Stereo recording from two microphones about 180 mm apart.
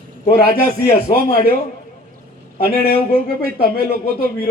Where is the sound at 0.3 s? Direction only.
55° left (ahead or behind).